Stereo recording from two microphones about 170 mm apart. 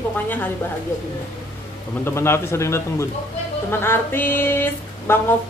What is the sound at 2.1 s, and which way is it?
A woman's voice, 15° left (ahead or behind).